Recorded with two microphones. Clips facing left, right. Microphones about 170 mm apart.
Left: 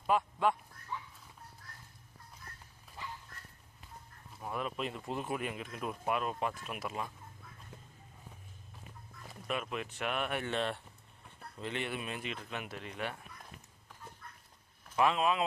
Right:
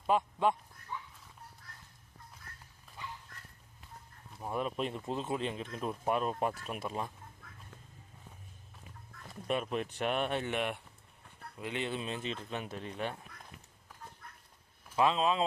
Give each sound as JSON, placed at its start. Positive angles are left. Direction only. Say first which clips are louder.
{"t": 0.1, "sound": "speech", "louder": "right 1 dB", "side_deg": -20}
{"t": 4.4, "sound": "speech", "louder": "right 3 dB", "side_deg": -35}
{"t": 5.0, "sound": "speech", "louder": "right 2 dB", "side_deg": -20}
{"t": 9.5, "sound": "speech", "louder": "right 4 dB", "side_deg": -35}
{"t": 10.4, "sound": "speech", "louder": "even", "side_deg": -15}
{"t": 14.9, "sound": "speech", "louder": "right 1 dB", "side_deg": -25}